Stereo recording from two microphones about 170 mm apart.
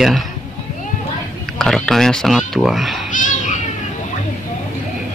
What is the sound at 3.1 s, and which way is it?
Cat, 50° left (ahead or behind).